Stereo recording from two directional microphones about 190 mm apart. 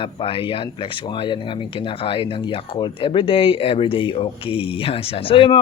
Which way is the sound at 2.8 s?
25° left (ahead or behind).